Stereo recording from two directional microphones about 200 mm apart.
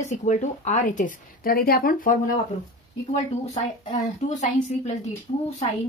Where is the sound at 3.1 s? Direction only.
35° left (ahead or behind).